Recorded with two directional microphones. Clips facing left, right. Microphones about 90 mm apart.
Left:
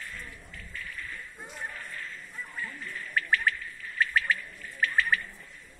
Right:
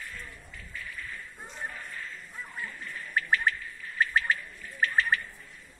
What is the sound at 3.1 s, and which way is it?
Bird, 20° right (ahead or behind).